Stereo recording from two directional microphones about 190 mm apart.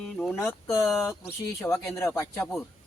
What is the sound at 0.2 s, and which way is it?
Speech, 10° left (ahead or behind).